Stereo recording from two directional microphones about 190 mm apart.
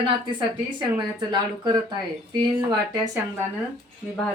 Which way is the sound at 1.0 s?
25° right (ahead or behind).